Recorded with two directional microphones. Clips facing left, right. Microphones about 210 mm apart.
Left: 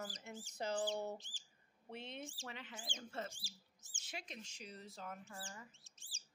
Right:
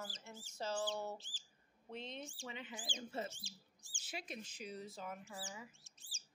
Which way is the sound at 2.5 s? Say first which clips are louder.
Right 3 dB; 5° right (ahead or behind).